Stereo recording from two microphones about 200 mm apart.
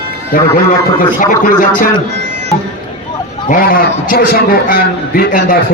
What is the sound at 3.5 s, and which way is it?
A man's voice, 45° left (ahead or behind).